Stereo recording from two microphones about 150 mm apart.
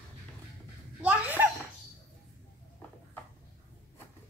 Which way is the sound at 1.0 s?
10° right (ahead or behind).